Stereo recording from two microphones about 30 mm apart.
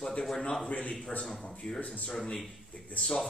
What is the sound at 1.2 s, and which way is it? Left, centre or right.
Speech, centre.